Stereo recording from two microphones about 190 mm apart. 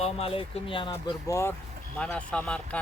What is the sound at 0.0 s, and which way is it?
Speech, 30° left (ahead or behind).